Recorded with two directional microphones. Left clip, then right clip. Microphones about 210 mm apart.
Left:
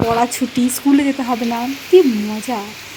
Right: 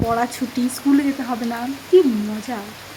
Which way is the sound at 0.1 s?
15° left (ahead or behind).